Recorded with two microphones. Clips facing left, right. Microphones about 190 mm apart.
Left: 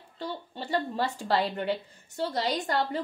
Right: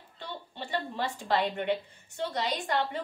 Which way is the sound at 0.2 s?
40° left (ahead or behind).